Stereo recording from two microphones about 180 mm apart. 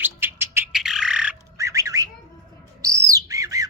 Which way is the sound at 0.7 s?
Centre (ahead or behind).